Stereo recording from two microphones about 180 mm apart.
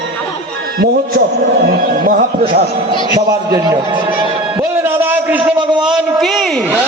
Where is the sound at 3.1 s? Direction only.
20° right (ahead or behind); by 6.6 s centre (ahead or behind).